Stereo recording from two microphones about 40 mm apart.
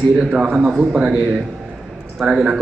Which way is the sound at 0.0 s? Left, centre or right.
Right.